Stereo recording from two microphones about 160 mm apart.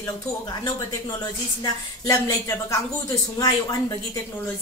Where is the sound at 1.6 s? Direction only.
20° left (ahead or behind).